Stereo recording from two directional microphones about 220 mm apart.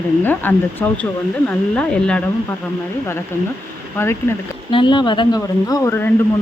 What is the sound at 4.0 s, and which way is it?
Speech, 10° left (ahead or behind).